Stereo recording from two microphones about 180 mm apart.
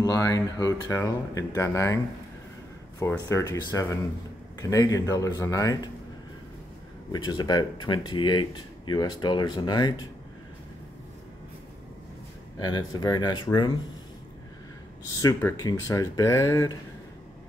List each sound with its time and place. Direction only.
0.0 s speech: 20° left (ahead or behind)
3.0 s speech: 15° left (ahead or behind)
7.1 s speech: 25° left (ahead or behind)
12.5 s speech: 20° left (ahead or behind)
15.2 s speech: 20° left (ahead or behind)